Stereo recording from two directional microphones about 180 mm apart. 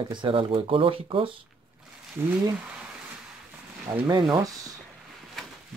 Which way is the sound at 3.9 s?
25° right (ahead or behind).